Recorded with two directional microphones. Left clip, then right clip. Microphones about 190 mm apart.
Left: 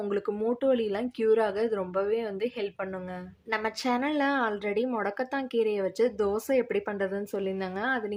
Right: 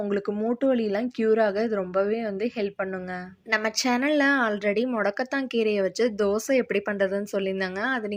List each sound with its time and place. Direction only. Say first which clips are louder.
0.1 s a woman's voice: right 2 dB; 15° right (ahead or behind)